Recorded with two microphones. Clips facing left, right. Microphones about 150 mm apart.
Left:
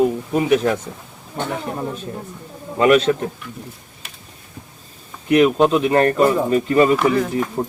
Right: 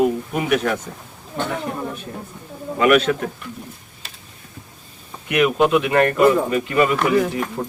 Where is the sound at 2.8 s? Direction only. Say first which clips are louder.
Left 2 dB; 30° left (ahead or behind).